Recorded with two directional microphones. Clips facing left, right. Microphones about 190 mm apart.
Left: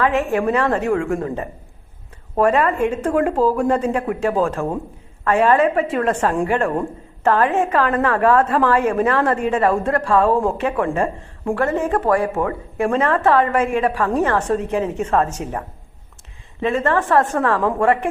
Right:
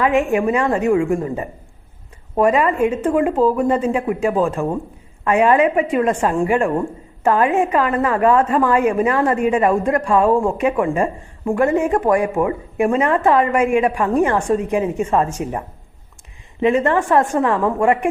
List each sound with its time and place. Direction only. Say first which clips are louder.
0.0 s speech: right 2 dB; 15° right (ahead or behind)
10.2 s speech: right 2 dB; centre (ahead or behind)
10.6 s speech: right 2 dB; 10° right (ahead or behind)